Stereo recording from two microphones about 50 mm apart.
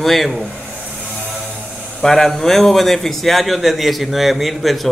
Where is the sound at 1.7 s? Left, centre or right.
Centre.